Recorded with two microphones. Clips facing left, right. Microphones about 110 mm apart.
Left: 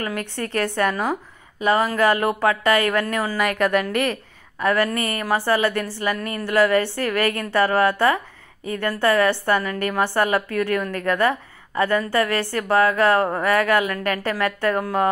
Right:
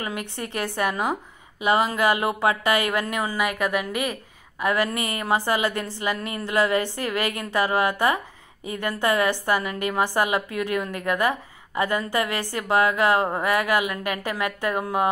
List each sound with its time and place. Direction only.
0.0 s a woman's voice: 20° right (ahead or behind)
3.5 s a woman's voice: 5° right (ahead or behind)